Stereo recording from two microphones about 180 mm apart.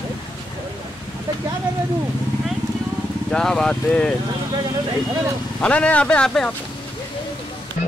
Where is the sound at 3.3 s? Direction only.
5° left (ahead or behind).